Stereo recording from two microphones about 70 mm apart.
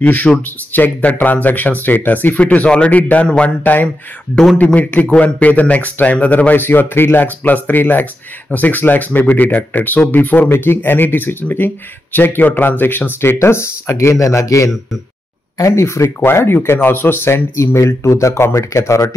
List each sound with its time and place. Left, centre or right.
0.0 s speech: centre
5.0 s speech: centre; by 13.9 s left
13.9 s speech: left